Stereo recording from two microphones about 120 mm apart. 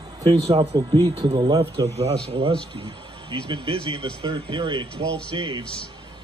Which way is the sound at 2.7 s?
45° right (ahead or behind).